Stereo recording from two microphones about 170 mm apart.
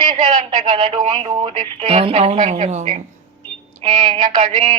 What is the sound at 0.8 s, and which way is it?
Speech, 30° right (ahead or behind).